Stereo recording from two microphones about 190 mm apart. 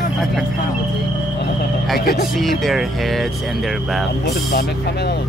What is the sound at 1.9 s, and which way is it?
Speech, 55° left (ahead or behind).